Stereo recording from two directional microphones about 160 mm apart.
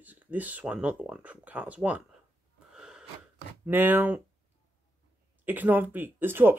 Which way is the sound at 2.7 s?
5° right (ahead or behind).